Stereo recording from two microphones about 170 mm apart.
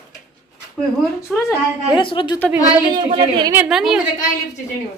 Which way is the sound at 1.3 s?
5° left (ahead or behind).